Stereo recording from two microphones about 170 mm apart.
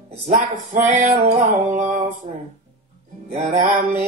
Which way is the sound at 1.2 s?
45° right (ahead or behind).